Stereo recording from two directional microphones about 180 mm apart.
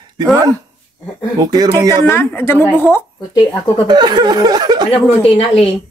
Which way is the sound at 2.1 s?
10° left (ahead or behind).